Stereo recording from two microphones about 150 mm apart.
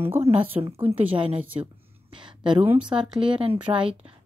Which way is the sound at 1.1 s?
35° right (ahead or behind).